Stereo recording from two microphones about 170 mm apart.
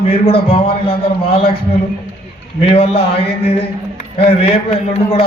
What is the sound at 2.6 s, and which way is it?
A man's voice, 35° left (ahead or behind).